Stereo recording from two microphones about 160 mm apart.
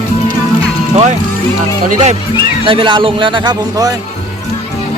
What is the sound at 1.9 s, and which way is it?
Speech, 45° right (ahead or behind).